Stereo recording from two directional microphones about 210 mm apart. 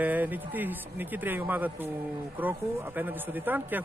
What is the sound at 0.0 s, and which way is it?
A man's voice, 10° right (ahead or behind).